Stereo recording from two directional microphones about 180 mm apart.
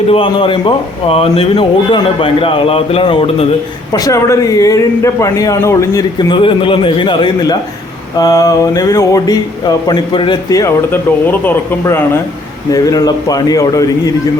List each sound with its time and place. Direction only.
0.1 s a man's voice: 30° left (ahead or behind)
3.9 s a man's voice: 20° left (ahead or behind)